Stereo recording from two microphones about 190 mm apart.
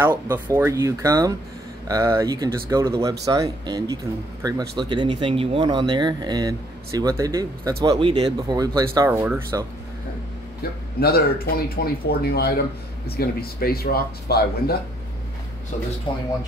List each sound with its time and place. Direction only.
0.0 s speech: 10° right (ahead or behind)
10.6 s speech: 55° left (ahead or behind)
16.1 s speech: 25° left (ahead or behind)